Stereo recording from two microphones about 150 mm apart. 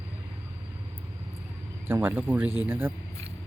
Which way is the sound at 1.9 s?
10° right (ahead or behind).